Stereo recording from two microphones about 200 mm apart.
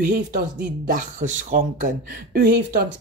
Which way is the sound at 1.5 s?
40° right (ahead or behind).